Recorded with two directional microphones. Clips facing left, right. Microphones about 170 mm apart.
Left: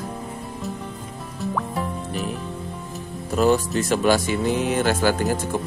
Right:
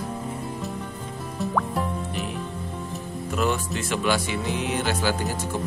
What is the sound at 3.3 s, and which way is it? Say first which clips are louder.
Speech: left 7 dB; 35° left (ahead or behind).